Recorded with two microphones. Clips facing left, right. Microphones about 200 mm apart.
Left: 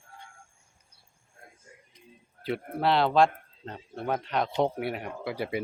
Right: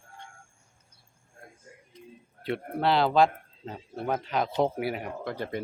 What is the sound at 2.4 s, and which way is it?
Speech, centre (ahead or behind).